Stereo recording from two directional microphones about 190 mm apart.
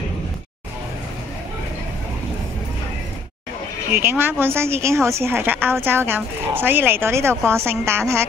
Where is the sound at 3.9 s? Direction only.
10° right (ahead or behind).